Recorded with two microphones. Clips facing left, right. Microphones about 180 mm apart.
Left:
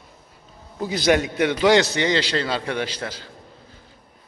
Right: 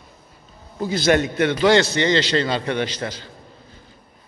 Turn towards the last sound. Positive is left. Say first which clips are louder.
# right 3 dB
turn(degrees=5)  # may be behind; listen again after turning